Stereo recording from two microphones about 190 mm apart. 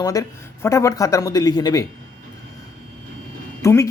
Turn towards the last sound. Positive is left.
turn(degrees=15)  # may be behind; listen again after turning